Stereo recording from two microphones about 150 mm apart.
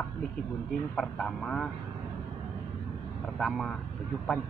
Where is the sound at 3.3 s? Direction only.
Centre (ahead or behind).